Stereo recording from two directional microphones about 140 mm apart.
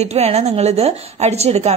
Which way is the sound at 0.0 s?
50° right (ahead or behind).